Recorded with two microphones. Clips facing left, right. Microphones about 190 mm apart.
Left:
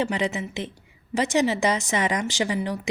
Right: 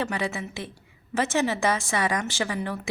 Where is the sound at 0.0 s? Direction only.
20° left (ahead or behind).